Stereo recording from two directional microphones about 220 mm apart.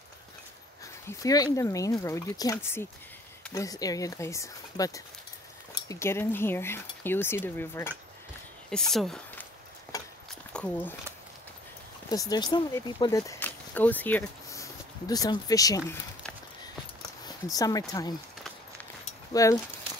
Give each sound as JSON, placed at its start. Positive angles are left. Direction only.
{"t": 1.0, "sound": "speech", "side_deg": 15}
{"t": 9.9, "sound": "horse", "side_deg": 15}
{"t": 10.5, "sound": "speech", "side_deg": 5}
{"t": 12.1, "sound": "speech", "side_deg": 15}
{"t": 17.6, "sound": "speech", "side_deg": 15}
{"t": 19.3, "sound": "speech", "side_deg": 15}